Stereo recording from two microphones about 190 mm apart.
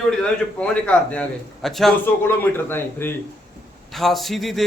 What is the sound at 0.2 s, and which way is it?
A man's voice, 5° left (ahead or behind).